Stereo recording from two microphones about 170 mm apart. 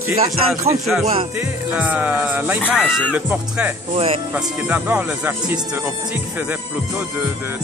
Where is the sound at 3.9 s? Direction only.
35° right (ahead or behind).